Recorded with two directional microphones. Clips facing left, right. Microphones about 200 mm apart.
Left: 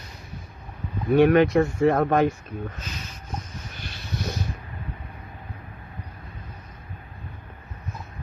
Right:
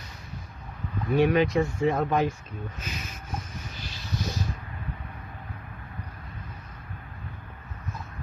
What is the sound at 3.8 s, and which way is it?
Vehicle, 60° left (ahead or behind).